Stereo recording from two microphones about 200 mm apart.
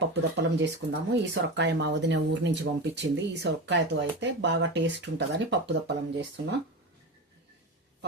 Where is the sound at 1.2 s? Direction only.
60° right (ahead or behind).